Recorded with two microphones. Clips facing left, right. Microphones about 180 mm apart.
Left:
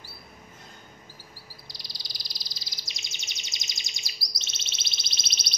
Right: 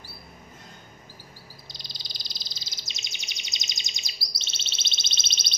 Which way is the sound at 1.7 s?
20° right (ahead or behind).